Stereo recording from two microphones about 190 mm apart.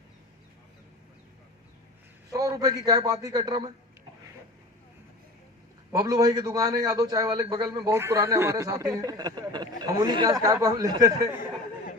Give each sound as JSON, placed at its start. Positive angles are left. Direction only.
{"t": 2.3, "sound": "a man's voice", "side_deg": -20}
{"t": 5.9, "sound": "a man's voice", "side_deg": -20}